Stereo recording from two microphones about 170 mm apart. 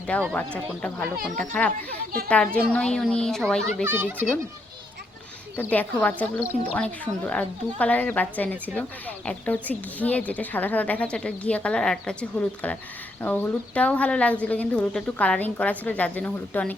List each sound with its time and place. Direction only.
0.3 s a woman's voice: 5° left (ahead or behind)
1.9 s a child's voice: 65° right (ahead or behind)
2.3 s a woman's voice: 5° left (ahead or behind)
3.8 s a child's voice: 10° right (ahead or behind)
5.7 s a woman's voice: 10° left (ahead or behind)